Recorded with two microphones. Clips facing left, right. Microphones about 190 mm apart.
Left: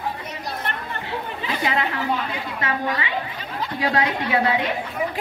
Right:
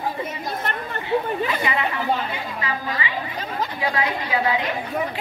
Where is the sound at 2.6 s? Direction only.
70° left (ahead or behind).